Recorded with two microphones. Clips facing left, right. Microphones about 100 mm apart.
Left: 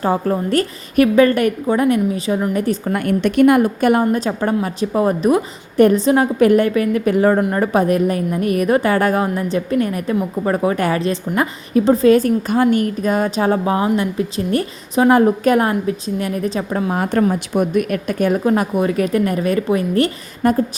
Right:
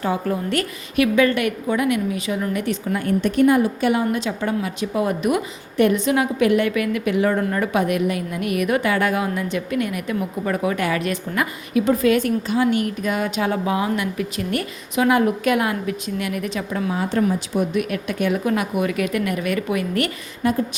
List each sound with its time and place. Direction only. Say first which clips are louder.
0.0 s a woman's voice: left 5 dB; 40° left (ahead or behind)
2.9 s a woman's voice: left 2 dB; 65° left (ahead or behind); by 16.9 s 35° left (ahead or behind)
16.9 s a woman's voice: left 3 dB; 55° left (ahead or behind); by 20.1 s 30° left (ahead or behind)
20.4 s a woman's voice: left 5 dB; 45° left (ahead or behind)